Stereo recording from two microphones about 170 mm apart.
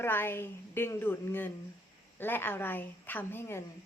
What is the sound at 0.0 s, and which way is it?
A woman's voice, 15° left (ahead or behind).